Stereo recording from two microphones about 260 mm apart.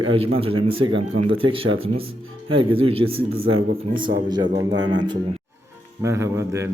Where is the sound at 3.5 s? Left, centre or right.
Right.